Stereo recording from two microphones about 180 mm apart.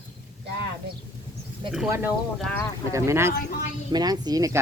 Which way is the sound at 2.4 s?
5° left (ahead or behind).